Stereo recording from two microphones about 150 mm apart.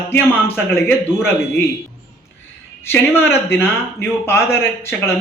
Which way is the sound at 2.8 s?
15° left (ahead or behind).